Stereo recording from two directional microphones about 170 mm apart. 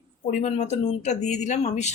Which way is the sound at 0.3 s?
45° left (ahead or behind).